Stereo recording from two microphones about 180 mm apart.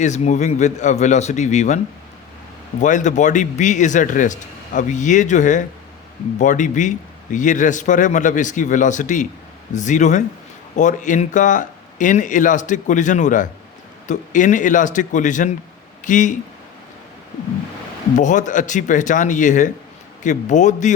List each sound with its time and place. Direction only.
0.0 s speech: 40° left (ahead or behind)
2.8 s a man's voice: 45° left (ahead or behind)
18.2 s a man's voice: 45° left (ahead or behind)